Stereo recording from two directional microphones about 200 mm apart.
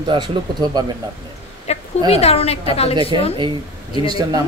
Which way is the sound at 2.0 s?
30° left (ahead or behind).